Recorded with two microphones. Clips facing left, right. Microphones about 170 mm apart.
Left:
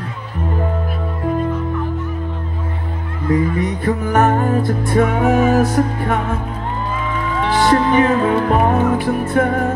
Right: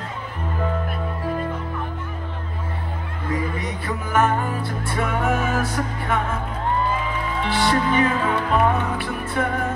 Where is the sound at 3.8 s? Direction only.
45° left (ahead or behind).